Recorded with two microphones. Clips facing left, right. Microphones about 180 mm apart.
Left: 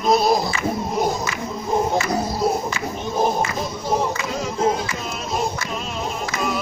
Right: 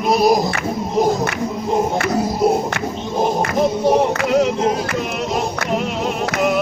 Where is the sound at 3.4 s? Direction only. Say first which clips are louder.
Right 9 dB; 65° right (ahead or behind).